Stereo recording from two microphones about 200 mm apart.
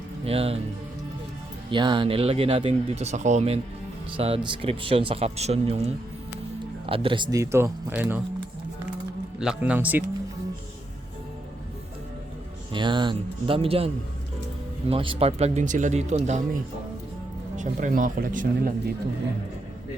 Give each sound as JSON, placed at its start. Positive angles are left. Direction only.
{"t": 0.3, "sound": "speech", "side_deg": -30}
{"t": 1.7, "sound": "speech", "side_deg": -25}
{"t": 9.4, "sound": "speech", "side_deg": -5}
{"t": 12.7, "sound": "speech", "side_deg": -25}
{"t": 17.6, "sound": "speech", "side_deg": -40}